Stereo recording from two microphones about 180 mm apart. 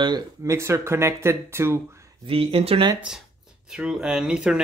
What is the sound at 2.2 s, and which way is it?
Speech, 30° right (ahead or behind).